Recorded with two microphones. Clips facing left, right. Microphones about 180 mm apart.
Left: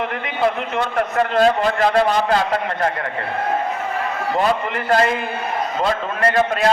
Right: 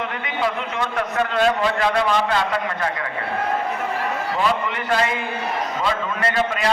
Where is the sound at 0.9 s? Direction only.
40° left (ahead or behind).